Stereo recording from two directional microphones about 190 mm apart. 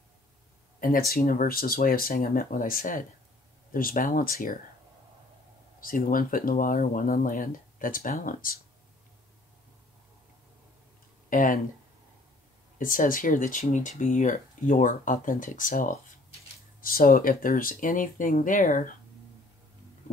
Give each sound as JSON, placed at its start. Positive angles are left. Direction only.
{"t": 0.7, "sound": "speech", "side_deg": 50}
{"t": 5.8, "sound": "speech", "side_deg": 45}
{"t": 11.2, "sound": "speech", "side_deg": 45}
{"t": 12.7, "sound": "speech", "side_deg": 45}